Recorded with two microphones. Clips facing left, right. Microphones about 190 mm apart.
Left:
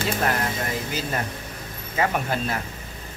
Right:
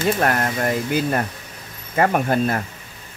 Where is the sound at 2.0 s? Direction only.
50° right (ahead or behind).